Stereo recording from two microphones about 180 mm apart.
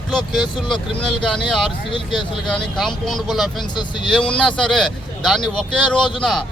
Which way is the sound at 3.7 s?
25° left (ahead or behind).